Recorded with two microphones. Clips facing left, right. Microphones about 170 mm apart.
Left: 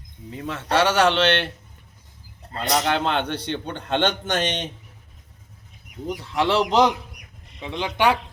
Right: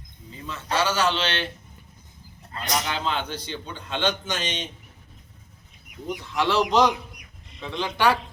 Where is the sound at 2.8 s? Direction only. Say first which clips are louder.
Left 6 dB; 65° left (ahead or behind).